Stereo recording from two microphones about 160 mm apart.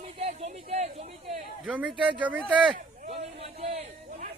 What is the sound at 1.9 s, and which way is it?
Speech, 30° right (ahead or behind).